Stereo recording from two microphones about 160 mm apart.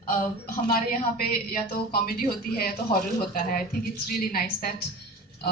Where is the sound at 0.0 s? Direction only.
60° left (ahead or behind).